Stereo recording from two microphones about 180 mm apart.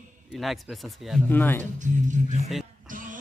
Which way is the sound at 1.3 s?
10° left (ahead or behind).